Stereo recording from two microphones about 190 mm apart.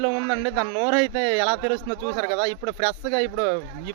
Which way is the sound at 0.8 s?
10° right (ahead or behind).